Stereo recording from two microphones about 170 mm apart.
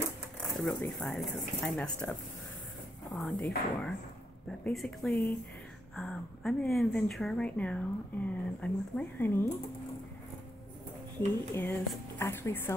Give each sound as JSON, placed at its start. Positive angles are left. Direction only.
{"t": 0.6, "sound": "a woman's voice", "side_deg": 0}
{"t": 3.2, "sound": "a woman's voice", "side_deg": 0}
{"t": 11.1, "sound": "speech", "side_deg": 10}